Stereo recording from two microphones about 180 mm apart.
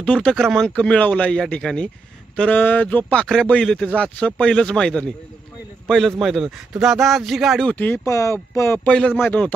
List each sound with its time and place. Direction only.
0.0 s a man's voice: 5° left (ahead or behind)